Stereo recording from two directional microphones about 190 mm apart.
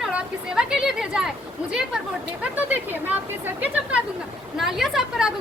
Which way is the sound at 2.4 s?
10° right (ahead or behind).